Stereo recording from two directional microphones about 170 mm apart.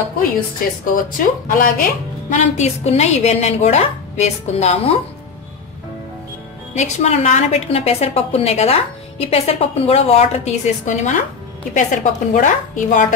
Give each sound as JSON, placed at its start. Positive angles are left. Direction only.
{"t": 0.9, "sound": "a woman's voice", "side_deg": 55}
{"t": 6.7, "sound": "a woman's voice", "side_deg": 45}